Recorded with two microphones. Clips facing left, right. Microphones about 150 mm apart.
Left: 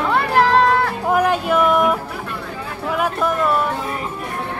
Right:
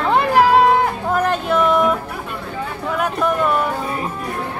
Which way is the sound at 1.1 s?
10° left (ahead or behind).